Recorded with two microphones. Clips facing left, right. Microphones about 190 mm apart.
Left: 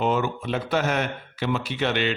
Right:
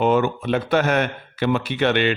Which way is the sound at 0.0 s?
60° right (ahead or behind).